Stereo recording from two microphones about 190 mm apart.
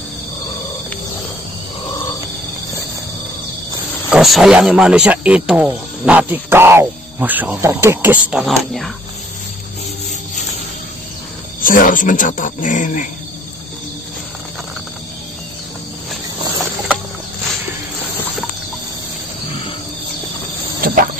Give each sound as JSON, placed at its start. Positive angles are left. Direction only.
{"t": 4.1, "sound": "speech", "side_deg": 0}
{"t": 11.6, "sound": "speech", "side_deg": 45}
{"t": 20.8, "sound": "cricket", "side_deg": -50}